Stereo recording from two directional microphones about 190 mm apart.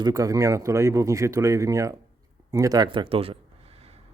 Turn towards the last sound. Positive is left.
turn(degrees=-30)  # may be behind; listen again after turning